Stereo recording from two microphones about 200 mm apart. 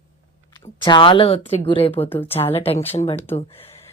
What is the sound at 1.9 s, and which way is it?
Speech, 10° left (ahead or behind).